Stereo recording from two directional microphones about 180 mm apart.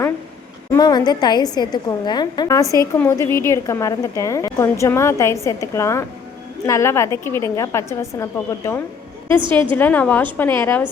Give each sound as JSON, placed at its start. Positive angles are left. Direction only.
{"t": 0.7, "sound": "a woman's voice", "side_deg": 20}